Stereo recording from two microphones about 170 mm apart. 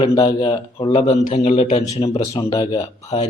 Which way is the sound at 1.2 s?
45° left (ahead or behind).